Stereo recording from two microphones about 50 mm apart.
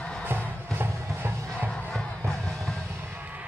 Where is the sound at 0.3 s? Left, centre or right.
Right.